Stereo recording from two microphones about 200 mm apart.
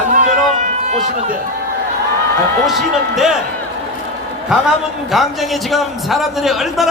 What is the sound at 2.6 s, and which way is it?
Speech, centre (ahead or behind).